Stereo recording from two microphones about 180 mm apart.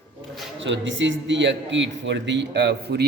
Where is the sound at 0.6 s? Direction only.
85° right.